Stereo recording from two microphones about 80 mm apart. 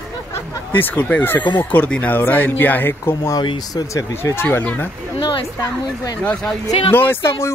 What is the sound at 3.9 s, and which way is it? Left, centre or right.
Speech, left.